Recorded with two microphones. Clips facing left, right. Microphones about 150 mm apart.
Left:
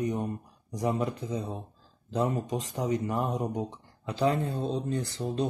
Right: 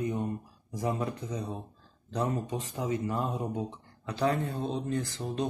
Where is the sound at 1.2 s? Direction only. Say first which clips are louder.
Left 3 dB; 30° left (ahead or behind).